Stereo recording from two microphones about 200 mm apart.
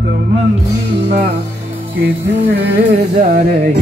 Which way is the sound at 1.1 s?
50° right (ahead or behind).